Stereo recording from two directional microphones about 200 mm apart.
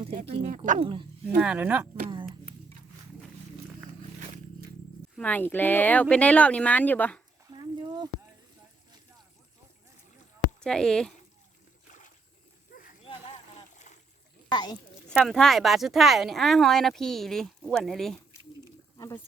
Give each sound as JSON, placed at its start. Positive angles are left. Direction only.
{"t": 0.2, "sound": "speech", "side_deg": -35}
{"t": 1.2, "sound": "speech", "side_deg": -5}
{"t": 5.1, "sound": "speech", "side_deg": 10}
{"t": 7.5, "sound": "a sound", "side_deg": -20}
{"t": 10.6, "sound": "speech", "side_deg": 5}
{"t": 11.9, "sound": "a sound", "side_deg": 40}
{"t": 13.1, "sound": "a sound", "side_deg": 30}
{"t": 13.7, "sound": "boat", "side_deg": 35}
{"t": 14.5, "sound": "speech", "side_deg": 20}
{"t": 15.1, "sound": "speech", "side_deg": 0}
{"t": 18.9, "sound": "speech", "side_deg": 15}